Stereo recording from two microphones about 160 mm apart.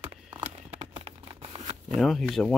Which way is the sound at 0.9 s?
35° right (ahead or behind).